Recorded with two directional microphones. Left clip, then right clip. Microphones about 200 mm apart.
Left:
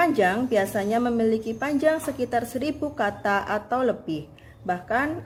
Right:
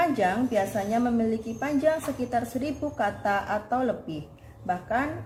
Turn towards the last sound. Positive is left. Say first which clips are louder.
# left 2 dB
turn(degrees=50)  # may be behind; listen again after turning